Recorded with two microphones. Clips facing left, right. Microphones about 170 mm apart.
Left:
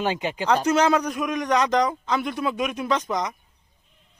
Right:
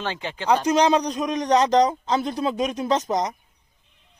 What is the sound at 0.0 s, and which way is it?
Speech, 15° left (ahead or behind).